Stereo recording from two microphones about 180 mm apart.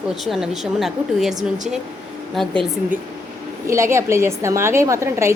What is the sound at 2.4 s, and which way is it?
Speech, centre (ahead or behind).